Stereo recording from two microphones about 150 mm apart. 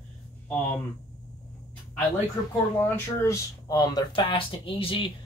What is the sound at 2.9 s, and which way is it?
Speech, 20° left (ahead or behind).